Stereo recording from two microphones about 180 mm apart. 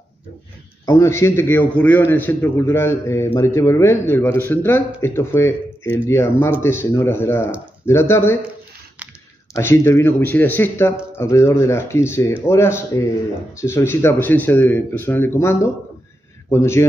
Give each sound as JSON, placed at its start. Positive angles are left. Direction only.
{"t": 0.8, "sound": "a man's voice", "side_deg": 15}
{"t": 9.6, "sound": "a man's voice", "side_deg": 15}